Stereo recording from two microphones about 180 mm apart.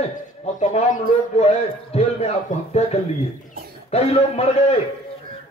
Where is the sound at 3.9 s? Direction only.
35° left (ahead or behind).